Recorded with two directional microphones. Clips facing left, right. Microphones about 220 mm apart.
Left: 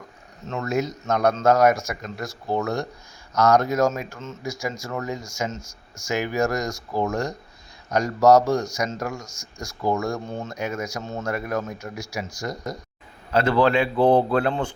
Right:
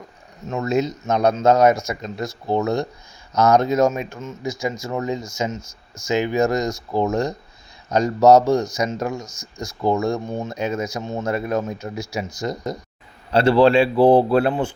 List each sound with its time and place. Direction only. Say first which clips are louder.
0.4 s speech: right 4 dB; 20° right (ahead or behind)
13.9 s speech: right 4 dB; 10° right (ahead or behind)